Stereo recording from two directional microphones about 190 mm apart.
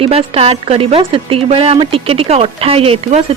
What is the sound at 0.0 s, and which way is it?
A woman's voice, 30° right (ahead or behind).